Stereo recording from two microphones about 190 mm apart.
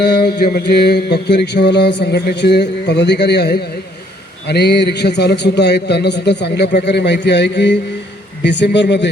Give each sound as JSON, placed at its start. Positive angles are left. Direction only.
{"t": 0.0, "sound": "mantra", "side_deg": 60}
{"t": 8.4, "sound": "a man's voice", "side_deg": 65}